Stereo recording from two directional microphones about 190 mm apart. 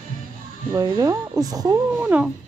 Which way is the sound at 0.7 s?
20° right (ahead or behind).